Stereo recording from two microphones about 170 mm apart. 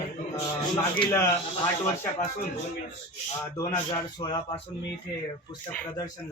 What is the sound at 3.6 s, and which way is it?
Speech, 20° left (ahead or behind).